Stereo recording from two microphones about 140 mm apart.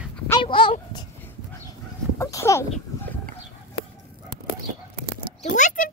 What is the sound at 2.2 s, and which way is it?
Speech, 20° left (ahead or behind).